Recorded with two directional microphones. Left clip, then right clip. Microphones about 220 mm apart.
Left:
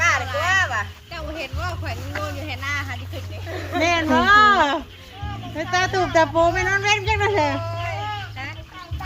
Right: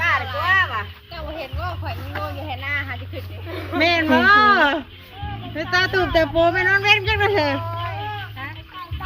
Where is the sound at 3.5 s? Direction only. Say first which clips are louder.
Right 2 dB; 40° right (ahead or behind).